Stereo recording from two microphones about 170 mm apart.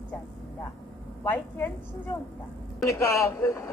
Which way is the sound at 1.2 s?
15° left (ahead or behind).